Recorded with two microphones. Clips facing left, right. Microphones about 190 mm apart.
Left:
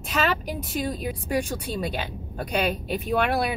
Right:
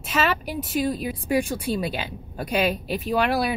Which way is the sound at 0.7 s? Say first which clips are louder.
Right 4 dB; 5° right (ahead or behind).